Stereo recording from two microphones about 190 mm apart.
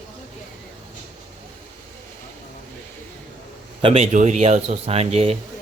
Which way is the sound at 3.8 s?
30° right (ahead or behind).